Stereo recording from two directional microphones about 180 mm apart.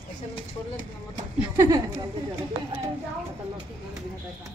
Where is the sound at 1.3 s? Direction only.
20° right (ahead or behind).